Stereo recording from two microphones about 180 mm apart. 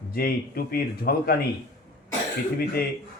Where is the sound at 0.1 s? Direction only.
55° left (ahead or behind).